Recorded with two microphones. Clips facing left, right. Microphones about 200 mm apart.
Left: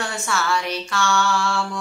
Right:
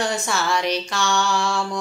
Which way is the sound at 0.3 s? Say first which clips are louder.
Left 3 dB; 20° right (ahead or behind).